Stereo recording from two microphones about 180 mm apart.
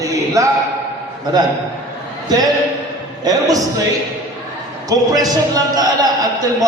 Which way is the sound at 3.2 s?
20° right (ahead or behind).